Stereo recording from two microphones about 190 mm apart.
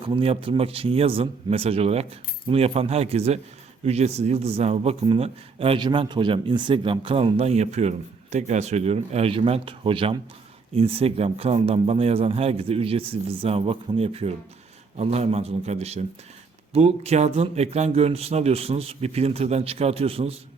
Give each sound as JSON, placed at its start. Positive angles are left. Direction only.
{"t": 0.1, "sound": "a man's voice", "side_deg": -30}